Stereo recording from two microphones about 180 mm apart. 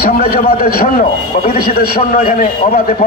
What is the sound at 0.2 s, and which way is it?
A man's voice, 55° left (ahead or behind).